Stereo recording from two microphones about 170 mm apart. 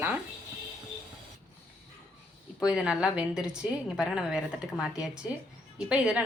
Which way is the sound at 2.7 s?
5° right (ahead or behind).